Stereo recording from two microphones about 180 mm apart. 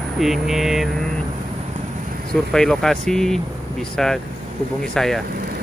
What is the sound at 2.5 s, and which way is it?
Speech, 5° left (ahead or behind).